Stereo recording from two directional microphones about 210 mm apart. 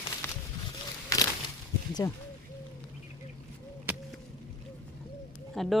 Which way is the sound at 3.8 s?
10° right (ahead or behind).